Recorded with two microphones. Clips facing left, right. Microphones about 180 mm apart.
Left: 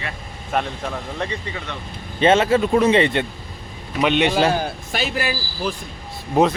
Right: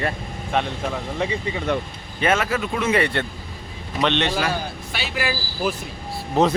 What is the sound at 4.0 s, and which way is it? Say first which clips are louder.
Speech: left 3 dB; 10° left (ahead or behind).